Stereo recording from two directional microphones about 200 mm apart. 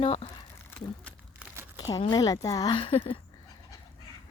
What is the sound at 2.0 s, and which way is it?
Speech, 20° left (ahead or behind).